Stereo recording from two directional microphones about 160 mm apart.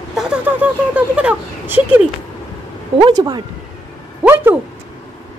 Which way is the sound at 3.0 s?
25° right (ahead or behind).